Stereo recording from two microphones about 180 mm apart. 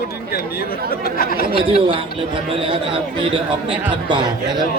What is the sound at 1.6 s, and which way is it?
Speech, 30° right (ahead or behind).